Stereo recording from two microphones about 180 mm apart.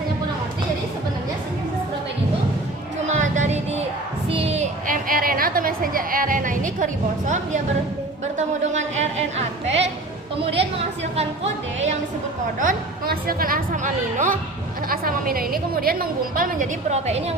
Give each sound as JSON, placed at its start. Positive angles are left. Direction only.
{"t": 3.1, "sound": "music", "side_deg": -40}
{"t": 4.3, "sound": "a woman's voice", "side_deg": -30}
{"t": 10.3, "sound": "speech", "side_deg": -30}
{"t": 12.5, "sound": "a woman's voice", "side_deg": -50}